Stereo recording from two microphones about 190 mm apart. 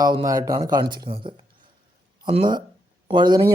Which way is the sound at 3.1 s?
25° right (ahead or behind).